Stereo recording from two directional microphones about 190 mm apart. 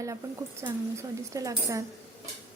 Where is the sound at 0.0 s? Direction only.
15° right (ahead or behind).